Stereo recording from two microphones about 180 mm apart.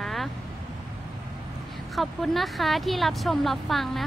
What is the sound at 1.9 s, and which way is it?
Speech, centre (ahead or behind).